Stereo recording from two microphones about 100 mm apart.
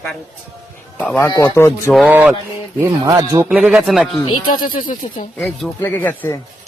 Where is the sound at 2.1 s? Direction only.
15° right (ahead or behind).